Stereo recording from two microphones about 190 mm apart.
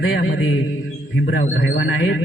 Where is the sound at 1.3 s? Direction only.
45° left (ahead or behind).